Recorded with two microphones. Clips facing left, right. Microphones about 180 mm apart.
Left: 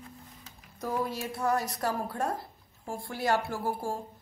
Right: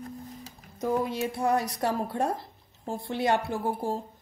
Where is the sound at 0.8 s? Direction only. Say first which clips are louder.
Right 5 dB; 20° right (ahead or behind).